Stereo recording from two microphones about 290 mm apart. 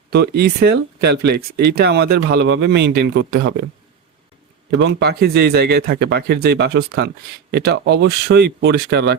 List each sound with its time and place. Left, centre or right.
0.1 s speech: right
4.8 s speech: right